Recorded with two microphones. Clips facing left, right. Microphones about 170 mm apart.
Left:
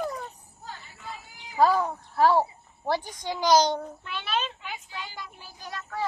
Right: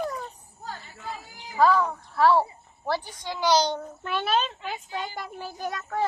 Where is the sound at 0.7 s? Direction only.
40° right (ahead or behind).